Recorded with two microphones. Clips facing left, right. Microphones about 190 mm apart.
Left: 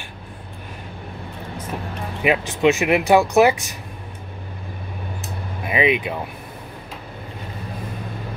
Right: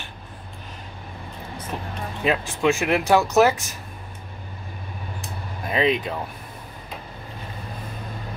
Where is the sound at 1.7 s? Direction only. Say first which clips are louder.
Left 2 dB; 10° left (ahead or behind).